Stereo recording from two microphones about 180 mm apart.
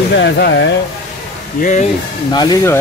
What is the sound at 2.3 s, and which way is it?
Speech, 20° left (ahead or behind).